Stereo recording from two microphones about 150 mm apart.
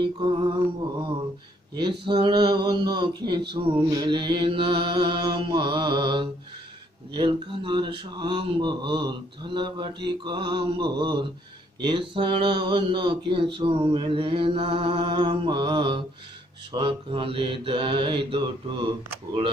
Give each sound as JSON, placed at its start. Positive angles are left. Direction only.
{"t": 0.0, "sound": "speech", "side_deg": -35}
{"t": 1.7, "sound": "speech", "side_deg": -30}